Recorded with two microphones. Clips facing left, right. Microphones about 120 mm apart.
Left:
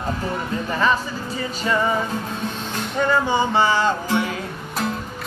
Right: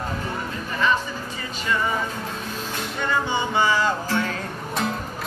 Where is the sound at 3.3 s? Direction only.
30° left (ahead or behind).